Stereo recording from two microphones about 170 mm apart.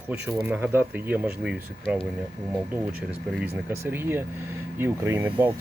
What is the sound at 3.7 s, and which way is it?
Speech, 15° right (ahead or behind).